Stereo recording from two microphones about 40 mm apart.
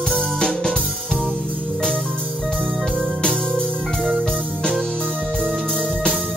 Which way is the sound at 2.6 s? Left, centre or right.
Right.